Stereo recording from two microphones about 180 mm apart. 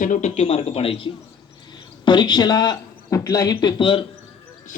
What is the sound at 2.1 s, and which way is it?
Speech, 25° left (ahead or behind).